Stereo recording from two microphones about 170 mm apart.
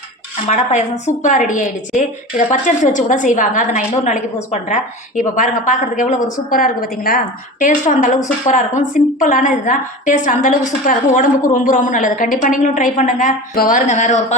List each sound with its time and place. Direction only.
0.4 s a woman's voice: 40° left (ahead or behind)